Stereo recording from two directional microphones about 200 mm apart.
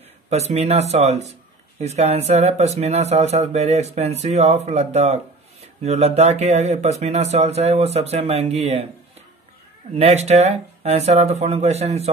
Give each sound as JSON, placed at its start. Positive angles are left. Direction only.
{"t": 0.3, "sound": "speech", "side_deg": -30}
{"t": 9.9, "sound": "speech", "side_deg": -30}